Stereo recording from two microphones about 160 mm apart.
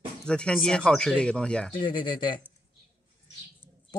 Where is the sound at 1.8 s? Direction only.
30° left (ahead or behind).